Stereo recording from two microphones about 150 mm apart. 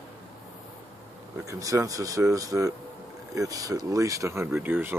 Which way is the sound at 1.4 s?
20° right (ahead or behind).